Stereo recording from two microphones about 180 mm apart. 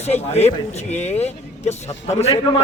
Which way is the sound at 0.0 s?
35° left (ahead or behind).